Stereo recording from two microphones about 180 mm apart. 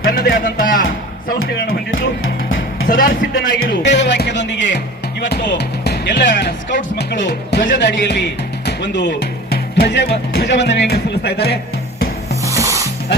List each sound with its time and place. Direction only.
0.1 s speech: 55° left (ahead or behind)
2.8 s speech: 50° left (ahead or behind)
3.3 s speech: 80° left
5.5 s speech: 65° left (ahead or behind)
6.7 s speech: 45° left (ahead or behind)
8.0 s speech: 70° left (ahead or behind)
12.5 s music: 15° right (ahead or behind)